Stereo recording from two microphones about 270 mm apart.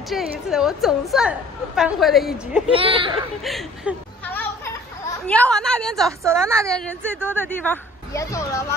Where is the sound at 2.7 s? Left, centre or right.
Centre.